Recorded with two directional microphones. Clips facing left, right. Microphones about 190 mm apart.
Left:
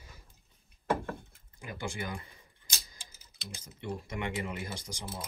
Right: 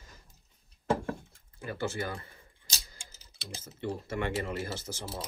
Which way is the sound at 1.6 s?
15° left (ahead or behind).